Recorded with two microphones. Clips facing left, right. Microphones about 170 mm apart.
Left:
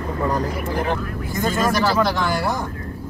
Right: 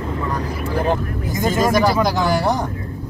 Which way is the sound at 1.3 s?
20° right (ahead or behind).